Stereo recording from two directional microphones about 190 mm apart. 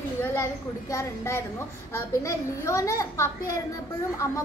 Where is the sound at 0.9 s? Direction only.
15° left (ahead or behind).